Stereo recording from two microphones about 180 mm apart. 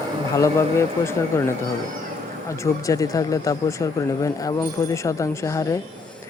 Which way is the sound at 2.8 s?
20° left (ahead or behind).